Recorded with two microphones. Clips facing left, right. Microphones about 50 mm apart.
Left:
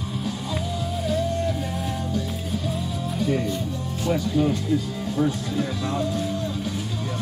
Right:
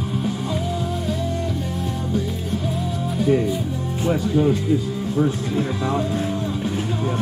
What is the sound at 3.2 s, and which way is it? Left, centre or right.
Speech, centre.